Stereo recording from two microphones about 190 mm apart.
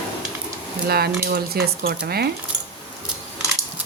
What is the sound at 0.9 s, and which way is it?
Speech, 55° right (ahead or behind).